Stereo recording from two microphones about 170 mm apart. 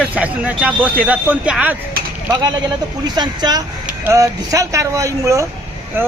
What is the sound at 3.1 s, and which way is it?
Speech, 25° right (ahead or behind).